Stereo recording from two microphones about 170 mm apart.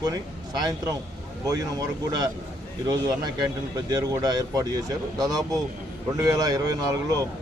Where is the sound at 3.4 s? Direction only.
25° right (ahead or behind).